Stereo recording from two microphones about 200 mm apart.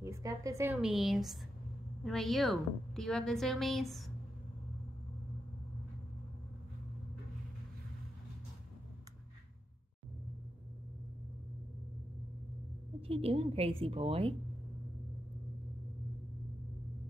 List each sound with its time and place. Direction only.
0.0 s a woman's voice: 15° right (ahead or behind)
0.7 s a woman's voice: centre (ahead or behind)
13.0 s a woman's voice: 30° right (ahead or behind)